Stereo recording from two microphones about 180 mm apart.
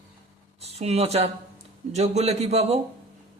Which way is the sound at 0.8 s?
35° right (ahead or behind).